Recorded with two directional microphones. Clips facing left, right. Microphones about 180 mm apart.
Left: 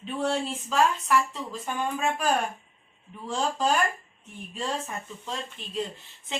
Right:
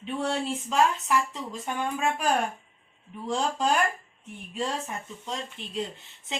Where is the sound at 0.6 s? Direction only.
20° right (ahead or behind).